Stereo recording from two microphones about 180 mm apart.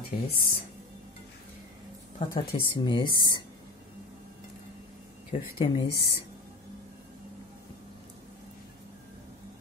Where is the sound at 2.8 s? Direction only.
25° left (ahead or behind).